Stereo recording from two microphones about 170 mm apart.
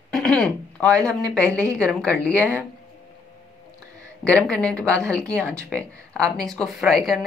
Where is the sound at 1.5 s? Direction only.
15° right (ahead or behind).